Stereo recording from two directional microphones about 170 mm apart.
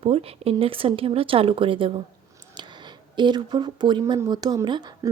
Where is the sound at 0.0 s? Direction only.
35° right (ahead or behind).